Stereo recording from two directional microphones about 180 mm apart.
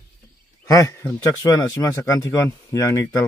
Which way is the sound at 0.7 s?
15° left (ahead or behind).